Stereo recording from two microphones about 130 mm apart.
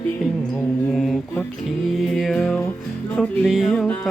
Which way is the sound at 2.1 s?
Centre (ahead or behind).